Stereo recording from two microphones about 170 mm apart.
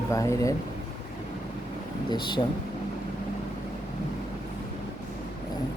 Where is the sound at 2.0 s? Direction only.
25° left (ahead or behind).